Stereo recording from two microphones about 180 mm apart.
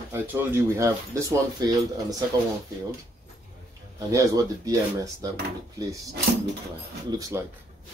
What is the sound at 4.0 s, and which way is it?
Speech, 20° right (ahead or behind).